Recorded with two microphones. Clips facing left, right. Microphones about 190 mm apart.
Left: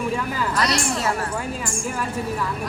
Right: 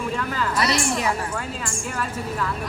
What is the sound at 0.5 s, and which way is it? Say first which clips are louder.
Speech: right 1 dB; 5° right (ahead or behind).